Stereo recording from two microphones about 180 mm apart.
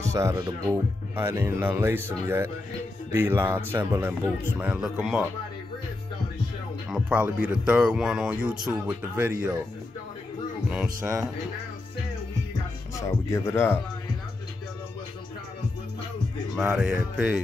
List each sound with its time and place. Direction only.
0.0 s speech: 15° right (ahead or behind)
6.9 s speech: 5° right (ahead or behind)
12.9 s speech: 15° left (ahead or behind)
16.6 s speech: 5° right (ahead or behind)